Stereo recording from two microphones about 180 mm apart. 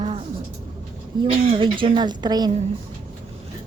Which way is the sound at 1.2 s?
30° right (ahead or behind).